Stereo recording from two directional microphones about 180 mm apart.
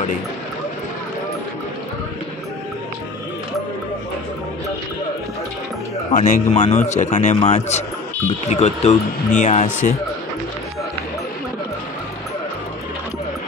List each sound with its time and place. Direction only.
6.1 s a man's voice: 45° left (ahead or behind)